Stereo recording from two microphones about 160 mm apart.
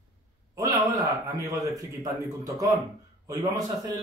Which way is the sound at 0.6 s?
20° right (ahead or behind).